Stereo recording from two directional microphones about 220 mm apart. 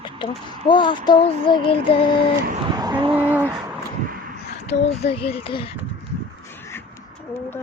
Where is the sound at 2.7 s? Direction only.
20° right (ahead or behind).